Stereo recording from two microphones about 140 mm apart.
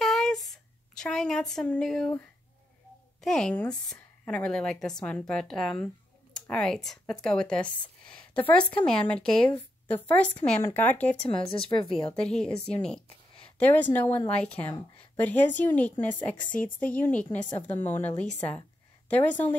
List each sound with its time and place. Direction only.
0.0 s a sound: 5° left (ahead or behind)
3.2 s a woman's voice: 5° left (ahead or behind)
11.1 s speech: 40° left (ahead or behind)
12.2 s a woman's voice: 5° left (ahead or behind)
16.3 s speech: 75° left (ahead or behind)
16.8 s a woman's voice: 10° left (ahead or behind)